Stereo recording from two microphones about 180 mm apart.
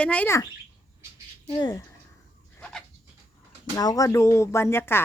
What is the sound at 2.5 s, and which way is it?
Bird, 5° left (ahead or behind).